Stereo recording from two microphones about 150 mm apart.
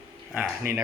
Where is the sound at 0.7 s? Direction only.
90° right.